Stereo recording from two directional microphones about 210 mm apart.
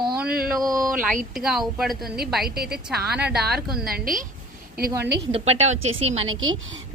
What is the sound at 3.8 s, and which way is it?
A woman's voice, 45° right (ahead or behind).